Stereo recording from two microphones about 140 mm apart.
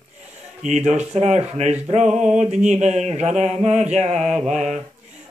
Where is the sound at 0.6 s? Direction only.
55° right (ahead or behind).